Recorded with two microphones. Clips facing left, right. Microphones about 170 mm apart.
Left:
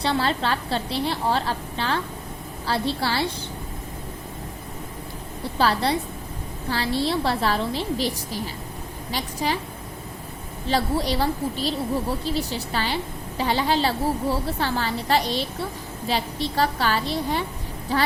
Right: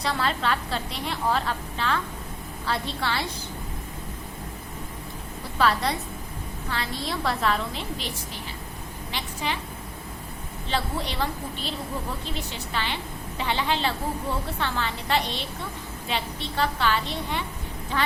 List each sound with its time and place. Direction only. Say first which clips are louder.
0.0 s a woman's voice: left 3 dB; 30° left (ahead or behind)
5.5 s a woman's voice: left 2 dB; 30° left (ahead or behind)
10.7 s a woman's voice: left 6 dB; 40° left (ahead or behind)